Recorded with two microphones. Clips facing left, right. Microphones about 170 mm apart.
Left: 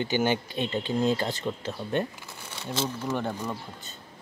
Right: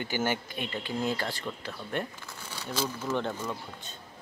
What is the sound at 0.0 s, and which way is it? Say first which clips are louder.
Speech: left 5 dB; 20° left (ahead or behind).